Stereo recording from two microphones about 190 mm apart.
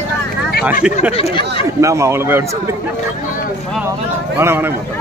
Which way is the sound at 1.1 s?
30° left (ahead or behind).